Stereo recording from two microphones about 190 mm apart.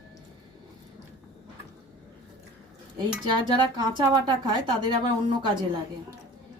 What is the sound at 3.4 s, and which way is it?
A woman's voice, 25° right (ahead or behind).